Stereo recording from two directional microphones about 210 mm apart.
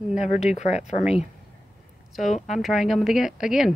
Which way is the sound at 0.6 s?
30° left (ahead or behind).